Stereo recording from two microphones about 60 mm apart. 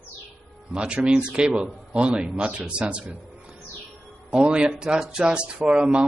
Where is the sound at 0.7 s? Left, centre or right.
Centre.